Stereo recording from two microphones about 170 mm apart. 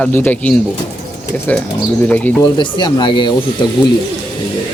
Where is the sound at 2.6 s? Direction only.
30° left (ahead or behind).